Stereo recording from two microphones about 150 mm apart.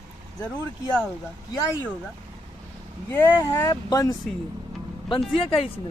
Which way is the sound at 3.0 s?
15° left (ahead or behind).